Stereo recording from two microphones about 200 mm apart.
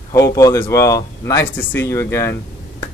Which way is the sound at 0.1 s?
15° left (ahead or behind).